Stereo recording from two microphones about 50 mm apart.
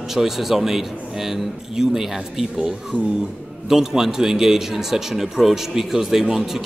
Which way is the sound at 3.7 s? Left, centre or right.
Centre.